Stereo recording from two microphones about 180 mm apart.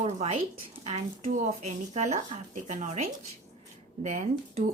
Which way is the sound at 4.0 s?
40° right (ahead or behind).